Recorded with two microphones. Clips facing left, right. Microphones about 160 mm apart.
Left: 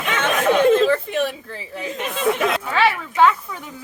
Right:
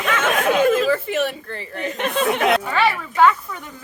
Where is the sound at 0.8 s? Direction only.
5° right (ahead or behind).